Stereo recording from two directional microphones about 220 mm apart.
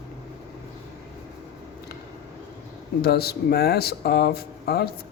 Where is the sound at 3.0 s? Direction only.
45° left (ahead or behind).